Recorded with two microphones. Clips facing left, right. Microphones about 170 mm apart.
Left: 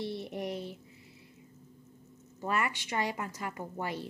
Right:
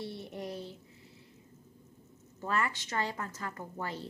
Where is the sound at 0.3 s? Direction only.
15° left (ahead or behind).